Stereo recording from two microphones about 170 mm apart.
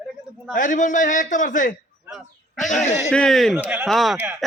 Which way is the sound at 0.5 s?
50° left (ahead or behind).